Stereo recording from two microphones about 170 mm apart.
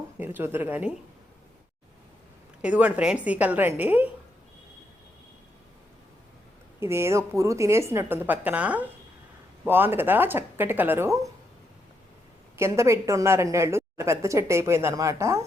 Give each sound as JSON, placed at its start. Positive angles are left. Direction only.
{"t": 0.2, "sound": "a woman's voice", "side_deg": -10}
{"t": 2.6, "sound": "a woman's voice", "side_deg": -10}
{"t": 6.7, "sound": "a woman's voice", "side_deg": -15}
{"t": 12.5, "sound": "a woman's voice", "side_deg": -15}